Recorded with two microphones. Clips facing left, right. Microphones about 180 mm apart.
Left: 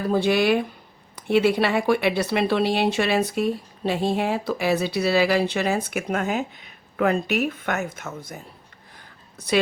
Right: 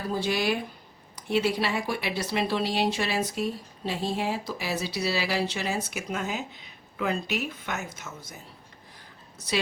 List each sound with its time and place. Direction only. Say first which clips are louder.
0.1 s speech: left 8 dB; 60° left (ahead or behind)